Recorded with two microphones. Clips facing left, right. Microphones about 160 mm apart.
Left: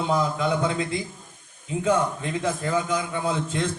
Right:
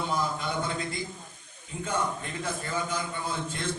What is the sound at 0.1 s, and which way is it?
Speech, 85° left.